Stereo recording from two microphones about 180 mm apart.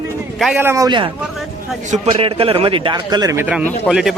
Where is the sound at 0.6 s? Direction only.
15° right (ahead or behind).